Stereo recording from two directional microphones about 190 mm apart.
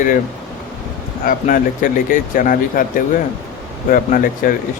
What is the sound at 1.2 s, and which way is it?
Speech, 45° left (ahead or behind).